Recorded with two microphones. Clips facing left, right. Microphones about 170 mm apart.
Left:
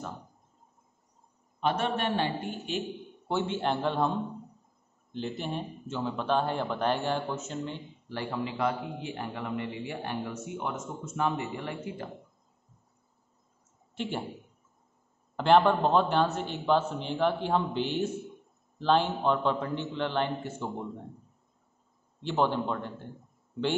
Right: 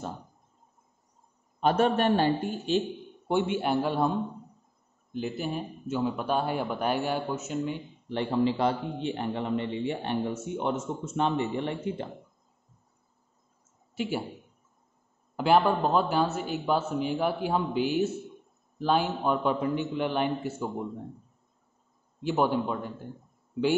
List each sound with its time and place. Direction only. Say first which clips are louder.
1.6 s a man's voice: right 5 dB; 45° right (ahead or behind)
3.3 s speech: right 3 dB; 15° right (ahead or behind)
5.1 s speech: right 2 dB; 5° right (ahead or behind)
8.1 s a man's voice: right 8 dB; 25° right (ahead or behind)
13.9 s a man's voice: right 3 dB; 5° right (ahead or behind)
15.3 s speech: left 1 dB; 5° right (ahead or behind)
22.2 s speech: right 2 dB; 10° right (ahead or behind)